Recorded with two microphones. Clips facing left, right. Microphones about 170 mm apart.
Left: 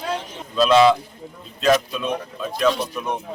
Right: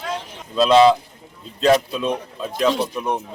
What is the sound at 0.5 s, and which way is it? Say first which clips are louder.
Speech: right 2 dB; 25° right (ahead or behind).